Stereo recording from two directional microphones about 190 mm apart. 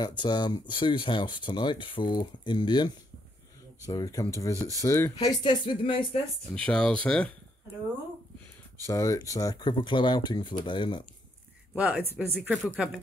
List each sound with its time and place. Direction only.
0.0 s speech: 25° left (ahead or behind)
6.5 s speech: 5° left (ahead or behind)
8.8 s speech: 15° left (ahead or behind)
11.7 s speech: 5° right (ahead or behind)